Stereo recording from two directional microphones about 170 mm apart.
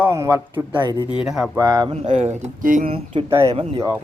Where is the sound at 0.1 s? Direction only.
20° right (ahead or behind).